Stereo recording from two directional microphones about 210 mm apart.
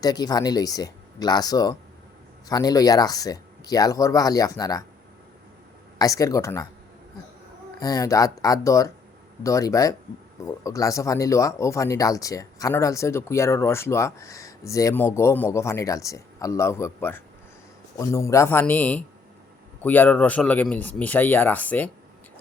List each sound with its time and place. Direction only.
0.0 s speech: 20° left (ahead or behind)
6.0 s speech: 15° left (ahead or behind)
7.8 s speech: 15° left (ahead or behind)